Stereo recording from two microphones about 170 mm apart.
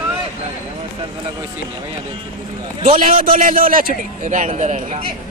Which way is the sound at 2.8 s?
50° right (ahead or behind).